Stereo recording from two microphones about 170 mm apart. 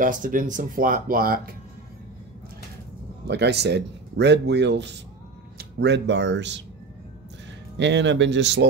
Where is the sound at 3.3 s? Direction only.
80° right.